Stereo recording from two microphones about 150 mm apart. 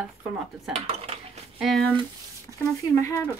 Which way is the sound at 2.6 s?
20° left (ahead or behind).